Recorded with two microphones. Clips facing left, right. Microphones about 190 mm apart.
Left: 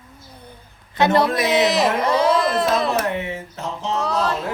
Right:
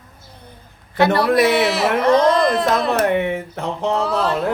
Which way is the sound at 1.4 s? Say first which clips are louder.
Right 1 dB; 20° left (ahead or behind).